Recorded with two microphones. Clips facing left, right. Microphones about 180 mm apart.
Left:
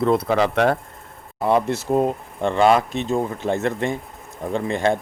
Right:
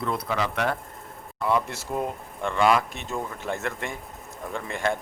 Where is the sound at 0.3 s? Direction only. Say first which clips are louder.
Left 8 dB; 70° left (ahead or behind).